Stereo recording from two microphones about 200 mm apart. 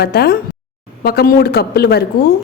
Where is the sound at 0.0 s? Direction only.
50° left (ahead or behind).